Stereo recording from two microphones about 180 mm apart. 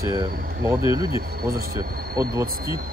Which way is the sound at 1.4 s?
55° right (ahead or behind).